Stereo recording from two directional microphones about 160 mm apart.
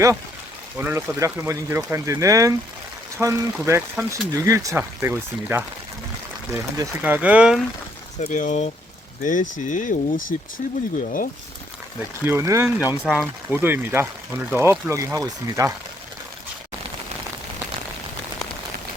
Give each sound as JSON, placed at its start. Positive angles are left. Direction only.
{"t": 0.8, "sound": "speech", "side_deg": -15}
{"t": 8.2, "sound": "speech", "side_deg": 50}
{"t": 10.6, "sound": "speech", "side_deg": 45}
{"t": 11.0, "sound": "speech", "side_deg": 60}
{"t": 12.2, "sound": "speech", "side_deg": -15}